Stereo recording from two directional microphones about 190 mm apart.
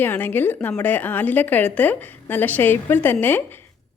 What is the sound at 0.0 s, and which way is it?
A woman's voice, 10° left (ahead or behind).